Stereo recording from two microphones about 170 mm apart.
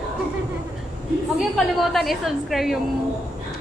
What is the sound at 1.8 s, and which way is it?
A woman's voice, centre (ahead or behind).